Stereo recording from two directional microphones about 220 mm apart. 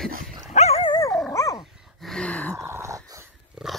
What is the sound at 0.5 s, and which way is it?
Dog, 30° left (ahead or behind).